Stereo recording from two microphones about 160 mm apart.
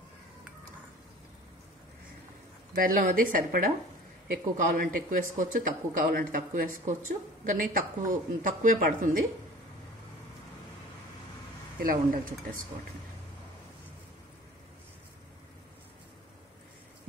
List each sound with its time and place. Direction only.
2.8 s speech: 60° right (ahead or behind)
11.8 s speech: 65° right (ahead or behind)